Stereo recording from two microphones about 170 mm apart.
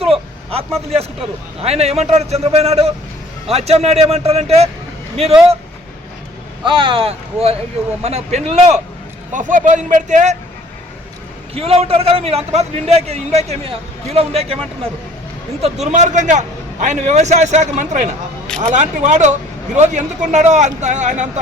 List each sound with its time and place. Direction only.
0.0 s vehicle: 35° right (ahead or behind)
1.6 s a man's voice: 40° right (ahead or behind)
6.7 s a man's voice: 30° right (ahead or behind); by 10.3 s 45° right (ahead or behind)
11.5 s a man's voice: 35° right (ahead or behind)
15.6 s a man's voice: 40° right (ahead or behind)